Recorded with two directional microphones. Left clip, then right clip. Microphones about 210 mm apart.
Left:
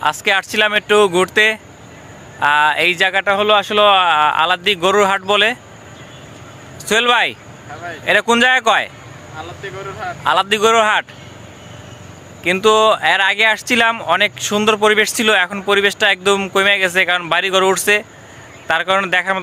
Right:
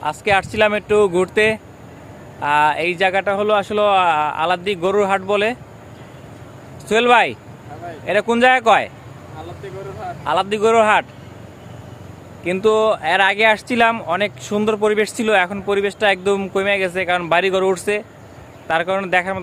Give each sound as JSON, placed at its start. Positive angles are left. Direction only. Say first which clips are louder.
{"t": 0.0, "sound": "speech", "louder": "left 2 dB", "side_deg": 5}
{"t": 6.8, "sound": "speech", "louder": "even", "side_deg": 0}
{"t": 10.0, "sound": "speech", "louder": "left 4 dB", "side_deg": 5}
{"t": 12.4, "sound": "speech", "louder": "left 4 dB", "side_deg": 0}